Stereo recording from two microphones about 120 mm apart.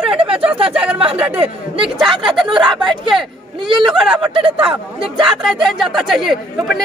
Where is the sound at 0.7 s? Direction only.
10° right (ahead or behind).